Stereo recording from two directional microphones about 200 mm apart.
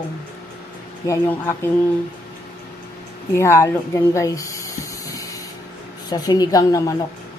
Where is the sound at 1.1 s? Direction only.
10° left (ahead or behind).